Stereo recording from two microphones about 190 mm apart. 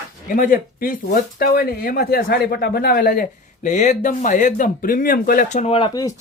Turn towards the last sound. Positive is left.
turn(degrees=25)  # may be behind; listen again after turning